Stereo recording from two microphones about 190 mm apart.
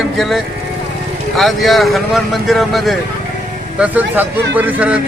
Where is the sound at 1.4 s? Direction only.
Centre (ahead or behind).